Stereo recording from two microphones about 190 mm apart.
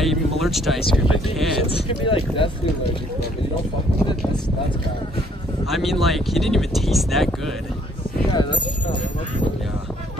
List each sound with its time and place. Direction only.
0.0 s a sound: centre (ahead or behind)
0.7 s speech: 30° left (ahead or behind)
5.7 s speech: centre (ahead or behind)
8.3 s speech: 25° left (ahead or behind)